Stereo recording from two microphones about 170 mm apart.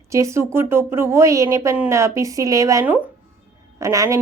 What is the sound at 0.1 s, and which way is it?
Speech, 15° right (ahead or behind).